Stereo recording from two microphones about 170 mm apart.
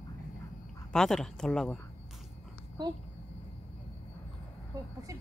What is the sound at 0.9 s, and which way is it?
Speech, 5° left (ahead or behind).